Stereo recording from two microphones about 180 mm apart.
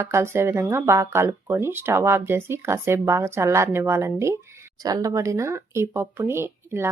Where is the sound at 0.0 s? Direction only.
15° right (ahead or behind).